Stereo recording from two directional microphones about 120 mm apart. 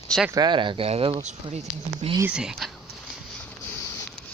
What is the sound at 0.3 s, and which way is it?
Speech, 35° right (ahead or behind).